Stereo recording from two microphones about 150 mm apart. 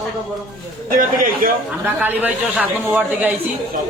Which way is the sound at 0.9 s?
65° right (ahead or behind).